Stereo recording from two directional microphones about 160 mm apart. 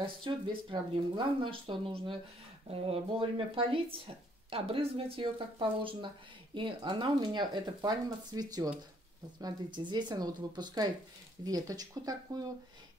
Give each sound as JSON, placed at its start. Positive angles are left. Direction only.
{"t": 0.0, "sound": "speech", "side_deg": -30}